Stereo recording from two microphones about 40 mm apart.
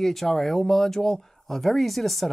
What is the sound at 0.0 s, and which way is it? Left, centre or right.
Speech, centre.